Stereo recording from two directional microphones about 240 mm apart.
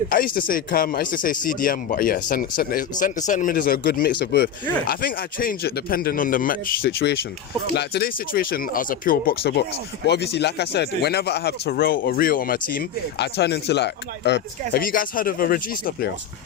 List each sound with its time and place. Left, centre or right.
0.3 s speech: left